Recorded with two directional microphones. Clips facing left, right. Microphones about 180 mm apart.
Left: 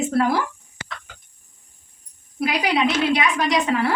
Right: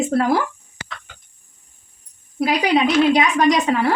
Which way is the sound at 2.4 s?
40° right (ahead or behind).